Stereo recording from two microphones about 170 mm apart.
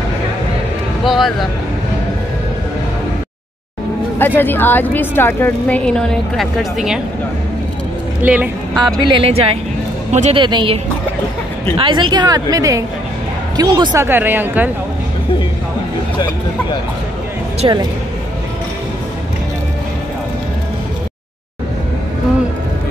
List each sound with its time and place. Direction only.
1.0 s speech: centre (ahead or behind)
4.4 s a woman's voice: 10° left (ahead or behind)
8.2 s speech: 10° right (ahead or behind)
8.7 s speech: 30° right (ahead or behind)
10.4 s a woman's voice: 30° right (ahead or behind)
14.0 s speech: 10° right (ahead or behind)
17.6 s speech: 25° right (ahead or behind)